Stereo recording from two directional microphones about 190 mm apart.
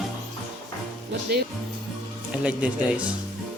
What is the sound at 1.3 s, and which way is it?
Speech, 55° right (ahead or behind).